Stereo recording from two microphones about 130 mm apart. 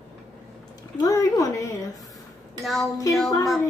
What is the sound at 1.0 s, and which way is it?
Speech, 25° left (ahead or behind).